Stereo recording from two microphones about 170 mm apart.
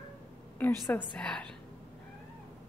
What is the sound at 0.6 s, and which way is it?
Speech, 15° left (ahead or behind).